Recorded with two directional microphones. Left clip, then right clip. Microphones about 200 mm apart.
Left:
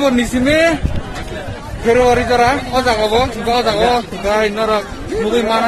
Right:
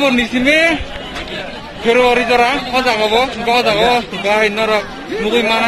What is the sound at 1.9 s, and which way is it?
Speech, centre (ahead or behind).